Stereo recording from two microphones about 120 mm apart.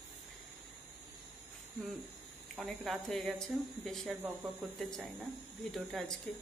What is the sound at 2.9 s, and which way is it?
Speech, centre (ahead or behind).